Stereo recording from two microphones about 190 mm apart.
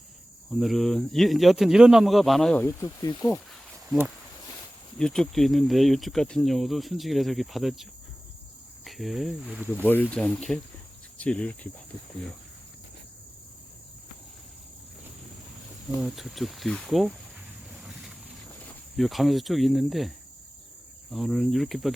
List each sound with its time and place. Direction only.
0.5 s speech: centre (ahead or behind)
2.8 s speech: 20° left (ahead or behind)
3.8 s speech: 5° right (ahead or behind)
16.0 s speech: centre (ahead or behind)
17.7 s boat: centre (ahead or behind)
18.9 s speech: centre (ahead or behind)